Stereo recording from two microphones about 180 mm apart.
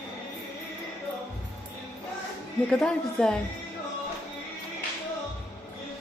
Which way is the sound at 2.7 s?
5° left (ahead or behind).